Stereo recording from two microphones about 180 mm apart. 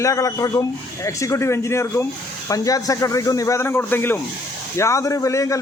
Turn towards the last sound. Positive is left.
turn(degrees=15)  # may be behind; listen again after turning